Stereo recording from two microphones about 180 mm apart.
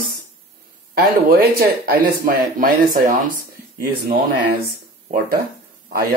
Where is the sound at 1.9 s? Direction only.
50° right (ahead or behind).